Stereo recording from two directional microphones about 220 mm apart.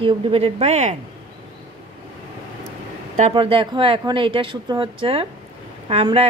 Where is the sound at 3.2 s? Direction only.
25° right (ahead or behind).